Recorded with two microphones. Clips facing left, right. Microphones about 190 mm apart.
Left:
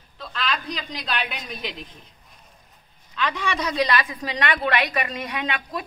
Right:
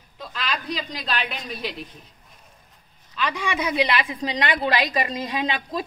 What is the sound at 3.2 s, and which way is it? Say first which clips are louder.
A woman's voice: even; 10° right (ahead or behind).